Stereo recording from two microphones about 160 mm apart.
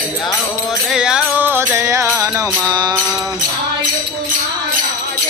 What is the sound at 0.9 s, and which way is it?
Music, 5° right (ahead or behind).